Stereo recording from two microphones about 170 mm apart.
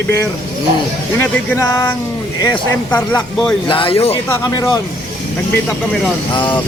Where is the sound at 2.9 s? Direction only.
5° left (ahead or behind).